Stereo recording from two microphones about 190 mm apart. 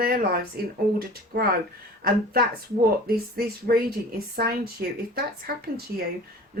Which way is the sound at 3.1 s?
50° right (ahead or behind).